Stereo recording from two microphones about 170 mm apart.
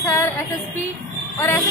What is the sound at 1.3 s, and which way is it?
Speech, 10° left (ahead or behind).